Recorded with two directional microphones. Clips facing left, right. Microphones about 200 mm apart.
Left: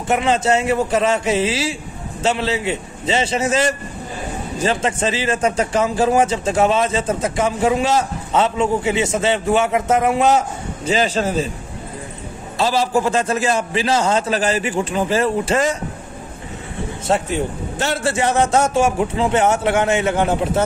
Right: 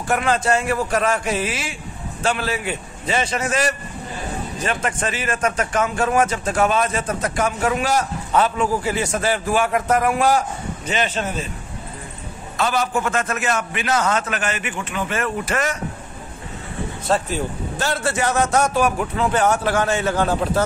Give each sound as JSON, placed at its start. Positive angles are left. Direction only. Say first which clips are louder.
{"t": 0.1, "sound": "a man's voice", "louder": "left 3 dB", "side_deg": 25}
{"t": 10.9, "sound": "a man's voice", "louder": "left 5 dB", "side_deg": 30}
{"t": 12.5, "sound": "a man's voice", "louder": "left 4 dB", "side_deg": 30}
{"t": 17.1, "sound": "a man's voice", "louder": "left 2 dB", "side_deg": 25}